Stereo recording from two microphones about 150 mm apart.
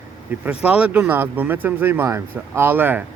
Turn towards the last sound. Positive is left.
turn(degrees=-15)  # may be behind; listen again after turning